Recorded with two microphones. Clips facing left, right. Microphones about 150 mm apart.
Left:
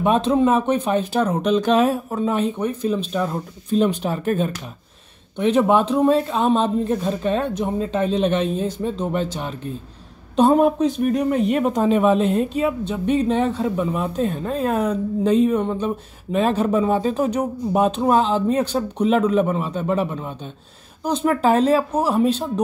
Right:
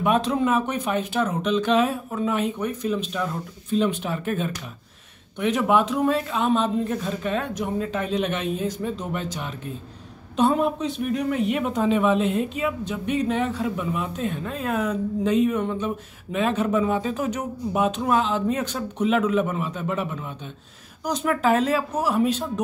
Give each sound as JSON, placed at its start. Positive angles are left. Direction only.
{"t": 0.0, "sound": "speech", "side_deg": 30}